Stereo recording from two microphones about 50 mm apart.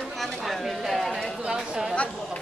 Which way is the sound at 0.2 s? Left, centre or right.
Centre.